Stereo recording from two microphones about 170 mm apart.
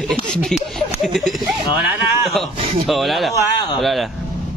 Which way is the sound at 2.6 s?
35° right (ahead or behind).